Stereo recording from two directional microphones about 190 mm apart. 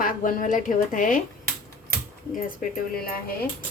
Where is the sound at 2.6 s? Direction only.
45° left (ahead or behind).